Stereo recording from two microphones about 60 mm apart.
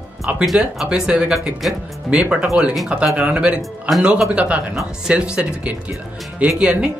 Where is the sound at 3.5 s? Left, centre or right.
Centre.